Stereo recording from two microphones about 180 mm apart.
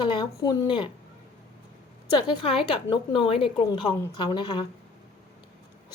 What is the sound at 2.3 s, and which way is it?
A woman's voice, 30° left (ahead or behind).